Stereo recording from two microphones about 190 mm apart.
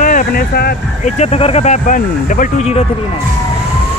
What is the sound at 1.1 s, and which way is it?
Speech, 35° left (ahead or behind).